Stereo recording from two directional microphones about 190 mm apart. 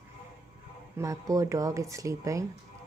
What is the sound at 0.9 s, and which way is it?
A man's voice, 15° right (ahead or behind).